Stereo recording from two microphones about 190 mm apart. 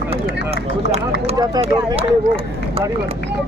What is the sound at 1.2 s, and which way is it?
Speech, 30° right (ahead or behind).